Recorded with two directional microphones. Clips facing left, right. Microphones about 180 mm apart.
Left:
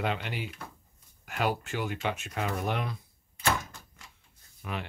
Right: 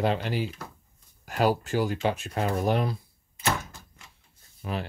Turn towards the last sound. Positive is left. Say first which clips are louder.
# right 5 dB
turn(degrees=-35)  # may be behind; listen again after turning